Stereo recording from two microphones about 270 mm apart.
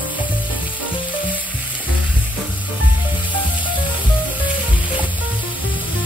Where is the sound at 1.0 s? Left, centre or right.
Centre.